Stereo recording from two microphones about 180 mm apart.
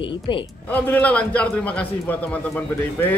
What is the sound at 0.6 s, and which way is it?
A man's voice, 10° left (ahead or behind).